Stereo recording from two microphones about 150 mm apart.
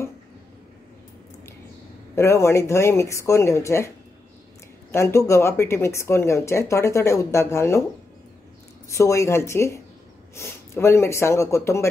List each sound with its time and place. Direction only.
2.1 s speech: 20° left (ahead or behind)
4.9 s speech: 20° left (ahead or behind)
8.8 s speech: 20° left (ahead or behind)